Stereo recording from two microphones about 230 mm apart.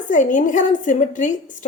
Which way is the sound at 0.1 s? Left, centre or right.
Left.